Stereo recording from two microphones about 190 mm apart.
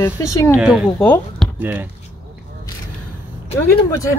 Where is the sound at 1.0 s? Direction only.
5° left (ahead or behind).